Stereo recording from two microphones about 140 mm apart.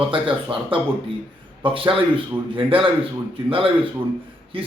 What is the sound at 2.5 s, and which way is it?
A man's voice, 40° right (ahead or behind).